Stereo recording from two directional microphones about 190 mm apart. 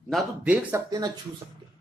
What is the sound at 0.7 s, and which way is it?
Speech, 20° right (ahead or behind).